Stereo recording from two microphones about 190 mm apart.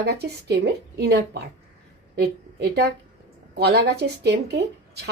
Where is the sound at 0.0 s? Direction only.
60° right (ahead or behind).